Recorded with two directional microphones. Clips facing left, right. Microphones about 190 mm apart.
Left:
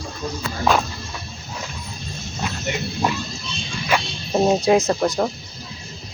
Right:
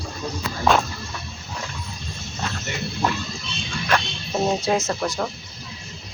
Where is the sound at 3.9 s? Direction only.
5° left (ahead or behind).